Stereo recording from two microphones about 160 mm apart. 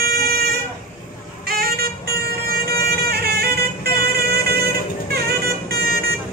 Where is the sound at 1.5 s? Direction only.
70° right (ahead or behind).